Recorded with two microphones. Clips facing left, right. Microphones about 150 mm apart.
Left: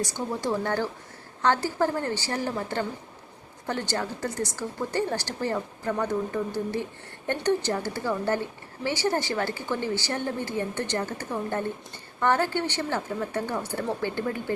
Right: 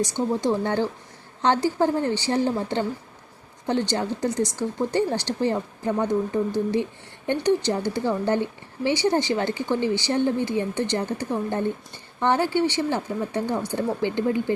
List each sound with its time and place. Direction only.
0.0 s speech: 20° right (ahead or behind)